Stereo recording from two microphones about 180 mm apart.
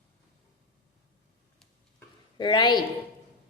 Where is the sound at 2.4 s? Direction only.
25° left (ahead or behind).